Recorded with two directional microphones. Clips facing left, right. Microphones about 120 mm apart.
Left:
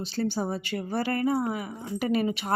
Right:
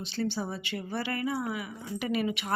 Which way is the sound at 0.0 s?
40° left (ahead or behind).